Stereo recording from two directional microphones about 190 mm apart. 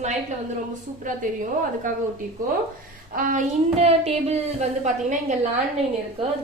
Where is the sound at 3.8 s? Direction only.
35° right (ahead or behind).